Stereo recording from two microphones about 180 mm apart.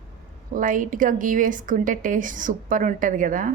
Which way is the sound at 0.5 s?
45° right (ahead or behind).